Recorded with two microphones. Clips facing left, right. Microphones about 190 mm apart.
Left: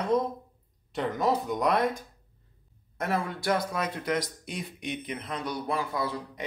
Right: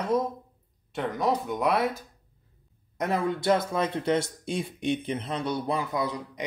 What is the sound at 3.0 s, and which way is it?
Speech, 20° right (ahead or behind).